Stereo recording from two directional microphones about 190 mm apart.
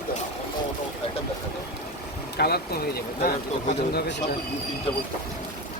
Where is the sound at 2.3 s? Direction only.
55° left (ahead or behind).